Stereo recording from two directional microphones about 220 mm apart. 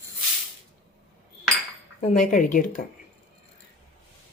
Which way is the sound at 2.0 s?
35° left (ahead or behind).